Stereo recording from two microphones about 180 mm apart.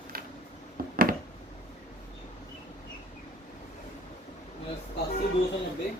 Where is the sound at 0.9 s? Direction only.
50° right (ahead or behind).